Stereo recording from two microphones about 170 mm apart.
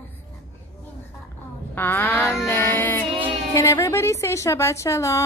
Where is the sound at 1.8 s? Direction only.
10° left (ahead or behind).